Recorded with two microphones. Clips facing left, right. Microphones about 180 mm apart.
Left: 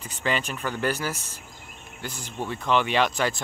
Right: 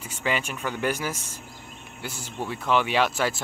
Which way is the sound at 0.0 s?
10° right (ahead or behind).